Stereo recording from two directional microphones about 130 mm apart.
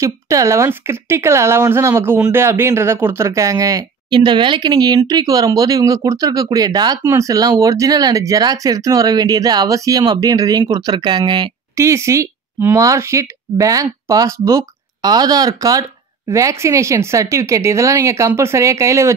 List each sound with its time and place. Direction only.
0.0 s speech: 25° right (ahead or behind)
11.7 s speech: 20° right (ahead or behind)